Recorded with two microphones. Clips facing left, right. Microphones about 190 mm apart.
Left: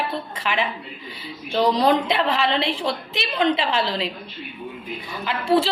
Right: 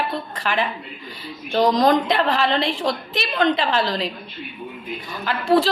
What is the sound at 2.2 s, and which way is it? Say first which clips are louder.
A woman's voice: right 1 dB; 40° right (ahead or behind).